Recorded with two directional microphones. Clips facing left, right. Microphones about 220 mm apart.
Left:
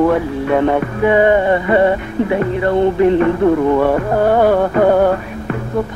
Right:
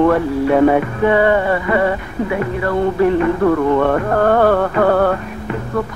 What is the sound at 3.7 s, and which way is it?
Music, 10° left (ahead or behind).